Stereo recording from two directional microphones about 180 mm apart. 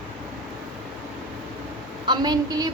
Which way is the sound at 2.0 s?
25° right (ahead or behind).